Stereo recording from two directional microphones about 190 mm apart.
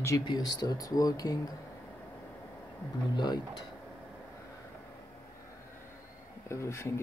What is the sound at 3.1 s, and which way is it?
Speech, 20° left (ahead or behind).